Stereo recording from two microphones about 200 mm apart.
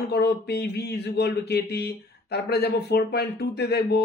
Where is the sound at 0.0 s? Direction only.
55° left (ahead or behind).